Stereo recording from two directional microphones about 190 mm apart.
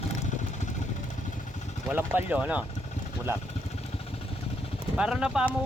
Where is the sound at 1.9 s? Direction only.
10° right (ahead or behind).